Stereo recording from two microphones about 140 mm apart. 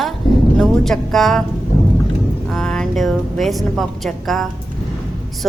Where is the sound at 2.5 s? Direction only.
5° left (ahead or behind).